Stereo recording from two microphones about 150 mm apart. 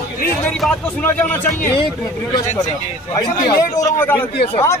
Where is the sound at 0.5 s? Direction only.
5° left (ahead or behind).